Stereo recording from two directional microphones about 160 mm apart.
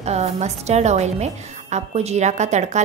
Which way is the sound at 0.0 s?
45° right (ahead or behind).